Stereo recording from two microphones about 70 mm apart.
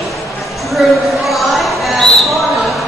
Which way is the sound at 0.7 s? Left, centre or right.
Centre.